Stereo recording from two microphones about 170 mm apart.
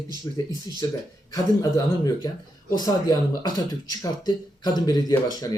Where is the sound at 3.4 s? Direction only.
25° left (ahead or behind).